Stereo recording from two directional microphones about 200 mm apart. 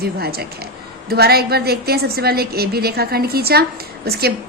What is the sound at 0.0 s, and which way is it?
A woman's voice, 50° right (ahead or behind).